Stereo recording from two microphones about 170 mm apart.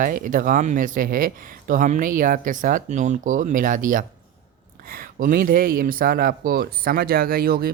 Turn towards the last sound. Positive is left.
turn(degrees=-60)  # may be behind; listen again after turning